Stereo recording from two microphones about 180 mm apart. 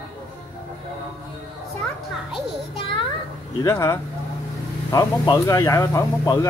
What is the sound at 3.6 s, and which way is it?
Speech, 15° left (ahead or behind).